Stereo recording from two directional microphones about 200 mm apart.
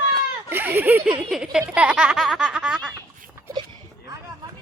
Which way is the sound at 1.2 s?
Centre (ahead or behind).